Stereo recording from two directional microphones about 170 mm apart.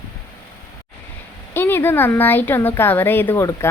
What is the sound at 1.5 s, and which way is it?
A woman's voice, 15° left (ahead or behind).